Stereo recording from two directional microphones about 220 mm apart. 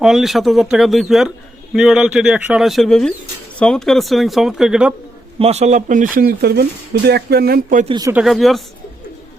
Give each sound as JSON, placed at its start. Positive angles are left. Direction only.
{"t": 0.0, "sound": "speech", "side_deg": 0}
{"t": 5.4, "sound": "speech", "side_deg": -30}
{"t": 7.9, "sound": "speech", "side_deg": -15}
{"t": 8.2, "sound": "speech", "side_deg": 0}